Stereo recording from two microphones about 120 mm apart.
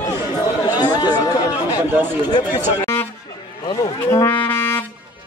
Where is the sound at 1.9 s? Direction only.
15° right (ahead or behind).